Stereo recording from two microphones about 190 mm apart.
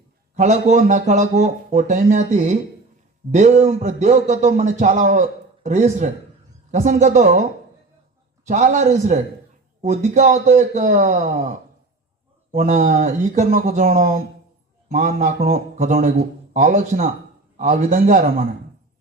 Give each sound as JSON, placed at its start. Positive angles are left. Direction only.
{"t": 0.3, "sound": "speech", "side_deg": -35}
{"t": 8.4, "sound": "speech", "side_deg": -40}
{"t": 12.5, "sound": "speech", "side_deg": -45}
{"t": 14.9, "sound": "speech", "side_deg": -35}
{"t": 15.4, "sound": "speech", "side_deg": -50}